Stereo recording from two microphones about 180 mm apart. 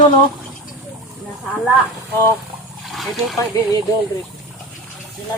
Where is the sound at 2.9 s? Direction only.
Centre (ahead or behind).